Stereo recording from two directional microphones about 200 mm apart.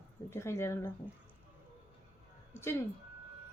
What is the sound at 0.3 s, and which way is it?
Speech, 15° left (ahead or behind).